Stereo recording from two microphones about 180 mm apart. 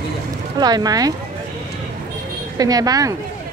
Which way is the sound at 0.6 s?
20° right (ahead or behind).